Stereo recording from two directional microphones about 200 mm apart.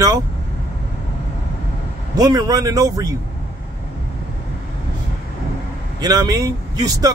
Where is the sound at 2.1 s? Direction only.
20° right (ahead or behind).